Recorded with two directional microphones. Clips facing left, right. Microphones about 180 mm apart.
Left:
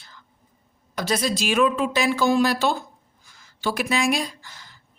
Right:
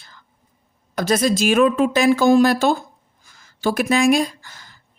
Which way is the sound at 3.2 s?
45° right (ahead or behind).